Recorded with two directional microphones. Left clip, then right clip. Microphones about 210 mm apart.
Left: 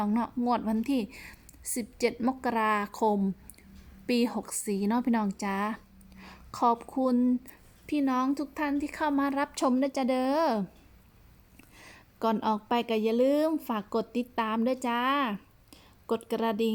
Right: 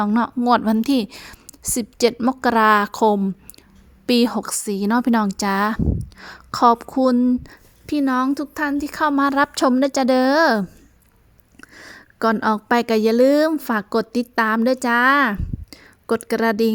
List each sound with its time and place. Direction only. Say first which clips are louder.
0.0 s a woman's voice: right 10 dB; 35° right (ahead or behind)
11.7 s speech: right 11 dB; 35° right (ahead or behind)